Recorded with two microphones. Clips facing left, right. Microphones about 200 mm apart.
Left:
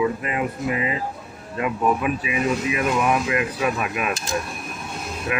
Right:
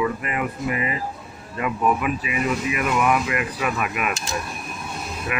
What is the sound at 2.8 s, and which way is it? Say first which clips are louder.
Speech: right 1 dB; 30° left (ahead or behind).